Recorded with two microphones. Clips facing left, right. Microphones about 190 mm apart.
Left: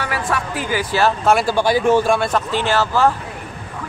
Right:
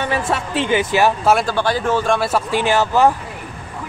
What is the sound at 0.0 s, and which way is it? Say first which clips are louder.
Speech: right 2 dB; 25° right (ahead or behind).